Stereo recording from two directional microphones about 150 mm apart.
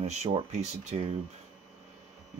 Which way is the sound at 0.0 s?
45° right (ahead or behind).